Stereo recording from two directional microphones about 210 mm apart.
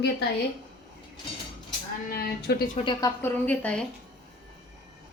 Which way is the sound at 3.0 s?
10° left (ahead or behind).